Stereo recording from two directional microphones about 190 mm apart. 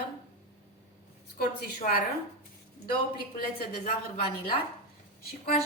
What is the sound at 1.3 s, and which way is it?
Speech, 55° left (ahead or behind).